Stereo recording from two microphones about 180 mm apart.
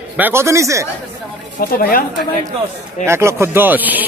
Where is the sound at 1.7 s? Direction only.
50° left (ahead or behind).